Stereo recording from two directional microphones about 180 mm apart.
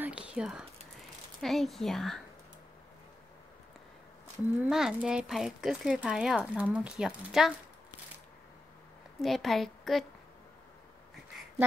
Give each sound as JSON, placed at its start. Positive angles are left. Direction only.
{"t": 0.0, "sound": "speech", "side_deg": -5}
{"t": 4.6, "sound": "speech", "side_deg": -5}
{"t": 9.2, "sound": "speech", "side_deg": 0}